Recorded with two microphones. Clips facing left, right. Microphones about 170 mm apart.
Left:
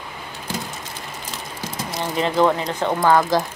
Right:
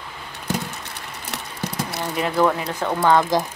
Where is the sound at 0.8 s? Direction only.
70° right (ahead or behind).